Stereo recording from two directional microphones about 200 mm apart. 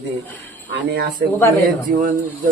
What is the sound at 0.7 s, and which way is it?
Speech, 55° right (ahead or behind).